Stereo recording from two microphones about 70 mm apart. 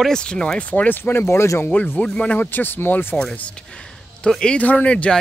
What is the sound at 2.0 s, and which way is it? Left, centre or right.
Speech, centre.